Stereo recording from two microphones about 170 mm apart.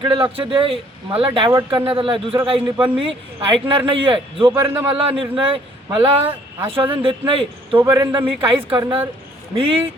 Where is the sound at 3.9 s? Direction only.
30° right (ahead or behind).